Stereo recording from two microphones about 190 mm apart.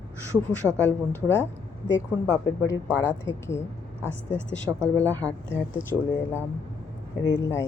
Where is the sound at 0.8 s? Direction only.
10° left (ahead or behind).